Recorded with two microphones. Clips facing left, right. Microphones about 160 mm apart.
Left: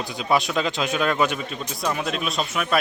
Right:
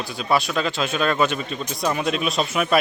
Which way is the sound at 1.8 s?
Centre (ahead or behind).